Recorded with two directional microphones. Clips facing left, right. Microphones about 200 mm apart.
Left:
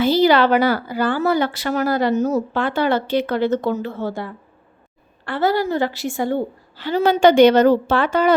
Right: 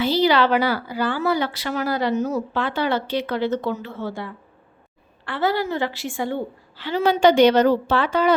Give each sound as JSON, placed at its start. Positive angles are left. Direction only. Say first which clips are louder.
{"t": 0.0, "sound": "a woman's voice", "louder": "left 4 dB", "side_deg": 50}